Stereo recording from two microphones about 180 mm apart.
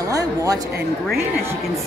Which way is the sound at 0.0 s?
20° right (ahead or behind).